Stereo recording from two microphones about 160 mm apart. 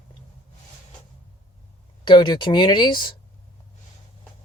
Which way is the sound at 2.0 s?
30° left (ahead or behind).